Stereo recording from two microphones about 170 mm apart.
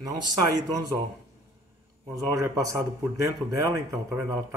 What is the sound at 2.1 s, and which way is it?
Speech, 15° right (ahead or behind).